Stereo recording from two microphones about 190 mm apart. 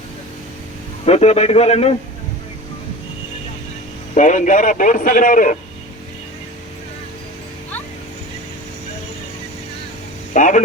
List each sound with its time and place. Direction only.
1.0 s a man's voice: 35° left (ahead or behind)
4.1 s a man's voice: 40° left (ahead or behind)
10.3 s speech: 40° left (ahead or behind)